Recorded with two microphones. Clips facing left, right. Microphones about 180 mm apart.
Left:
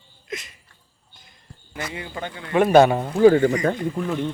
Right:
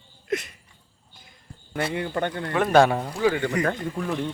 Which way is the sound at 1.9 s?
60° right (ahead or behind).